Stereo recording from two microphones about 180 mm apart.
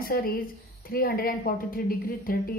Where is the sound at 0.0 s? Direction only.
55° left (ahead or behind).